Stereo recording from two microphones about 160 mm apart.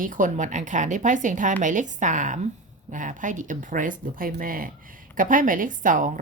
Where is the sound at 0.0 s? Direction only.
55° right (ahead or behind).